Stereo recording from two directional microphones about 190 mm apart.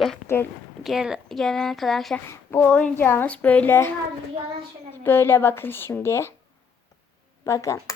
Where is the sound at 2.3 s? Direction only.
10° left (ahead or behind).